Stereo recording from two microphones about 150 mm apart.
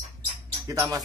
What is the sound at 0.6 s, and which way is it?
Speech, 20° right (ahead or behind).